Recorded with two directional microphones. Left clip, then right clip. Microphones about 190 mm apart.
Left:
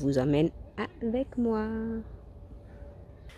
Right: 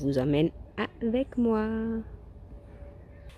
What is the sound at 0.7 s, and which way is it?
A woman's voice, 15° right (ahead or behind).